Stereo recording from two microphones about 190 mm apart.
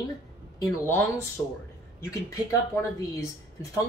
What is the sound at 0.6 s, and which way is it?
Speech, 15° left (ahead or behind).